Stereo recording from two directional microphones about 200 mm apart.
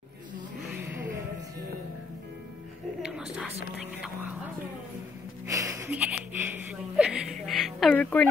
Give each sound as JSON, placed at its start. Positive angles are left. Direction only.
{"t": 4.0, "sound": "speech", "side_deg": -5}
{"t": 5.5, "sound": "music", "side_deg": -15}
{"t": 5.9, "sound": "speech", "side_deg": -5}
{"t": 7.0, "sound": "a sound", "side_deg": -5}